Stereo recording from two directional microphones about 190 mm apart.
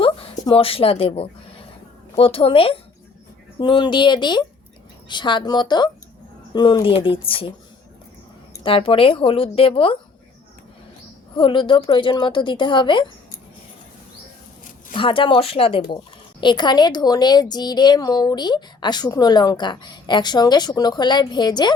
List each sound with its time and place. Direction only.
0.0 s a sound: 30° left (ahead or behind)
2.1 s a woman's voice: 30° left (ahead or behind)
8.6 s a woman's voice: 30° left (ahead or behind)
11.3 s a woman's voice: 25° left (ahead or behind)
14.9 s a woman's voice: 25° left (ahead or behind)